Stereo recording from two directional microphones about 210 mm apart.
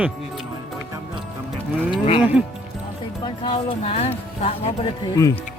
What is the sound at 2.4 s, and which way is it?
Speech, 5° right (ahead or behind).